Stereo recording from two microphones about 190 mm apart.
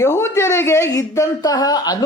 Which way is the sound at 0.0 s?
15° left (ahead or behind).